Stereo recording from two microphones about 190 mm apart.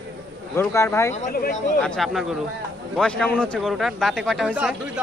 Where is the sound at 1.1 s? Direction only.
45° left (ahead or behind).